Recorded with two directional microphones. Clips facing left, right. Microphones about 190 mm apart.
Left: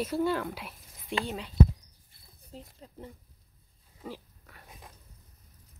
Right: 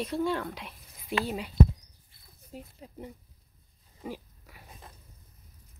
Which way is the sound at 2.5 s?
15° right (ahead or behind).